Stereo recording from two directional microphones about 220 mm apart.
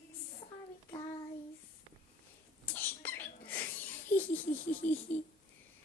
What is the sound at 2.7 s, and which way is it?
Whispering, 10° left (ahead or behind).